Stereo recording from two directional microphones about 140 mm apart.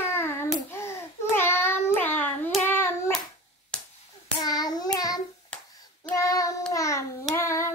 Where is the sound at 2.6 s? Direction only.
15° left (ahead or behind).